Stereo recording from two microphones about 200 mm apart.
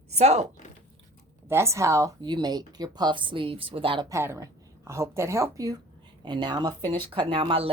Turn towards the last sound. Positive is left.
turn(degrees=-25)  # may be behind; listen again after turning